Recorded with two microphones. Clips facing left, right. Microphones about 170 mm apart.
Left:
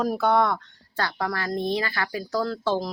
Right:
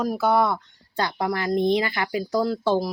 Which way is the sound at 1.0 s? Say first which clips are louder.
Right 3 dB; 15° right (ahead or behind).